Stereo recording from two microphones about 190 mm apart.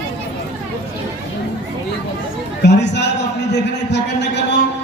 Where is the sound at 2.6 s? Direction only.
65° left (ahead or behind).